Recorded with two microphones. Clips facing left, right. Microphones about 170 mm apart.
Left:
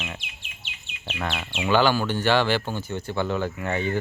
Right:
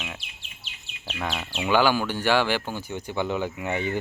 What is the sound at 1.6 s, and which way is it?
Speech, 10° right (ahead or behind).